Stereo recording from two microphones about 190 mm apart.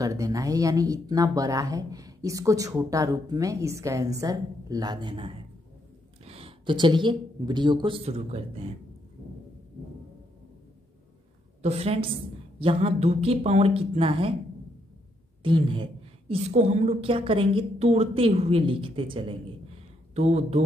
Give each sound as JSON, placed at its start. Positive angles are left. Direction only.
{"t": 0.0, "sound": "a woman's voice", "side_deg": -15}
{"t": 11.6, "sound": "speech", "side_deg": -30}
{"t": 15.4, "sound": "a woman's voice", "side_deg": -25}